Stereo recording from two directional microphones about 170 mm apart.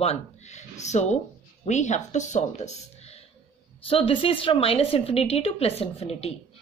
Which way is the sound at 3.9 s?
30° left (ahead or behind).